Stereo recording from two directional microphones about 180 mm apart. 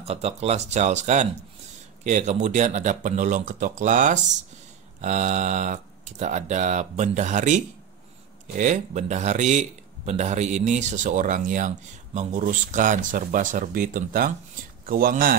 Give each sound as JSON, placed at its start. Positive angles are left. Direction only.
{"t": 0.0, "sound": "speech", "side_deg": -35}